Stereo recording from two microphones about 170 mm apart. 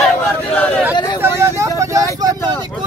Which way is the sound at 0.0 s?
10° left (ahead or behind).